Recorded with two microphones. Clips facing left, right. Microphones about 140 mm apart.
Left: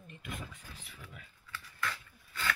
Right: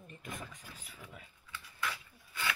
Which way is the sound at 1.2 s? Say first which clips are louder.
Left 1 dB; 20° right (ahead or behind).